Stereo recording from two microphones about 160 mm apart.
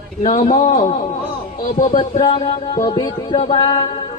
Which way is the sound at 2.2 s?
30° left (ahead or behind).